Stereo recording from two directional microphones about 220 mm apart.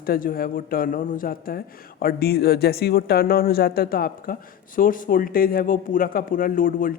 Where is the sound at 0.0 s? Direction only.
40° left (ahead or behind).